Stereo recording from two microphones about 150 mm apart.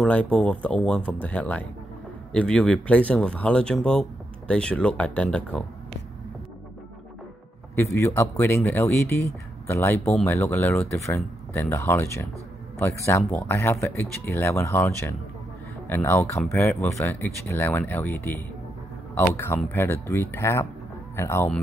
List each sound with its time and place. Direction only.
0.0 s speech: 5° left (ahead or behind)
7.7 s speech: 15° left (ahead or behind)